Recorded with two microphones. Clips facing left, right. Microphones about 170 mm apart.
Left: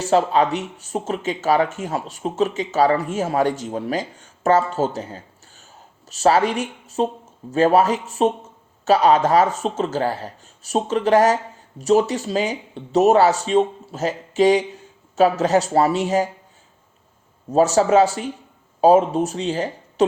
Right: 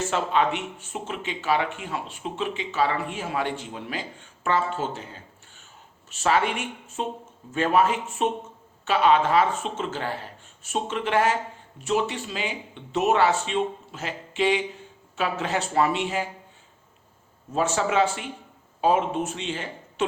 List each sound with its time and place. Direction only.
0.0 s speech: 35° left (ahead or behind)
17.5 s speech: 40° left (ahead or behind)